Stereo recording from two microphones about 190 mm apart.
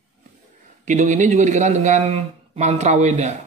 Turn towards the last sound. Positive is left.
turn(degrees=-35)  # may be behind; listen again after turning